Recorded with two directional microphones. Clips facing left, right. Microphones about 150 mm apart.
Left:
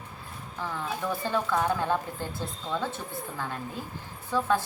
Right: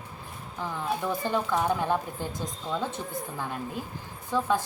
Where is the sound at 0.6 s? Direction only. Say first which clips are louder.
Right 2 dB; 15° right (ahead or behind).